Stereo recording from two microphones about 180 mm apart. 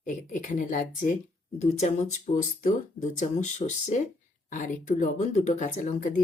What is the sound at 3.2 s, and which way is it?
Speech, 40° left (ahead or behind).